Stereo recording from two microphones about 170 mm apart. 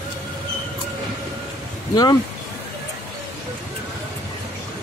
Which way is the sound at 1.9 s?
25° left (ahead or behind).